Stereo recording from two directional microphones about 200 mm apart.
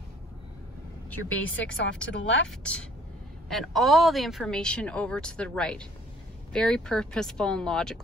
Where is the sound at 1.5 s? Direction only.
70° left (ahead or behind).